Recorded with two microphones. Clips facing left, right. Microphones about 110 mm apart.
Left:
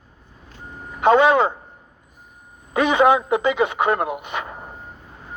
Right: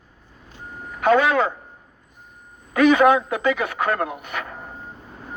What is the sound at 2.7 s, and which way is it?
Speech, 20° left (ahead or behind).